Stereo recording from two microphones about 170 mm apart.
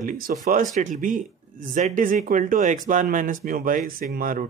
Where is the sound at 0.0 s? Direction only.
50° right (ahead or behind).